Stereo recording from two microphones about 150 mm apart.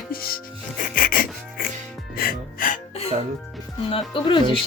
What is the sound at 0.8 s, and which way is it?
Music, 70° left (ahead or behind).